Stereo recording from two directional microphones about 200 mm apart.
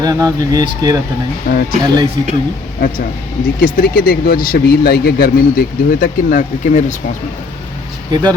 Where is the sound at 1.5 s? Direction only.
45° left (ahead or behind).